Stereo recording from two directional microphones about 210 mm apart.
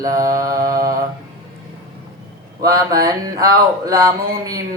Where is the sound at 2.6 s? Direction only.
20° right (ahead or behind).